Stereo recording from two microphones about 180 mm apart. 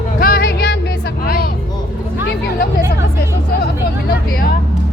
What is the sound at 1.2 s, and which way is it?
Vehicle, 55° left (ahead or behind).